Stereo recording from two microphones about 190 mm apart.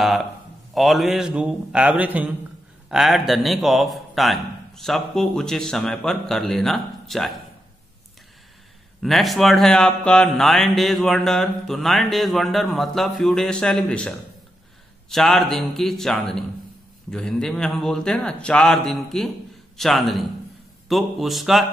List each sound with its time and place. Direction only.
0.7 s speech: centre (ahead or behind)
9.0 s speech: centre (ahead or behind)